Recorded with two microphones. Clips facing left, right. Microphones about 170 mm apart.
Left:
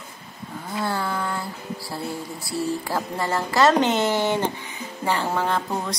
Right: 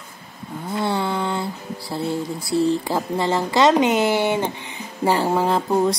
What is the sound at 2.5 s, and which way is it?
Speech, 25° right (ahead or behind).